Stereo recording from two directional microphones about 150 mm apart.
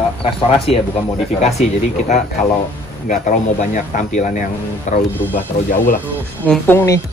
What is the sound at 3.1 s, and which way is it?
Speech, 60° left (ahead or behind).